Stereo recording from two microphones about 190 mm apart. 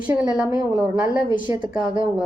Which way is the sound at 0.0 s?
5° right (ahead or behind).